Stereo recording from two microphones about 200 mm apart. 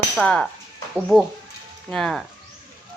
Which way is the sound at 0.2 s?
5° left (ahead or behind).